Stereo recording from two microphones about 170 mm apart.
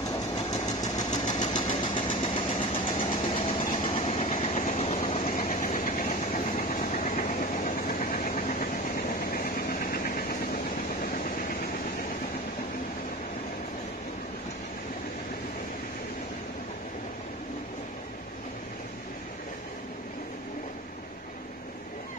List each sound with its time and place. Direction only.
0.7 s engine: 20° left (ahead or behind)
3.9 s vehicle: 35° left (ahead or behind); by 11.5 s 55° left (ahead or behind)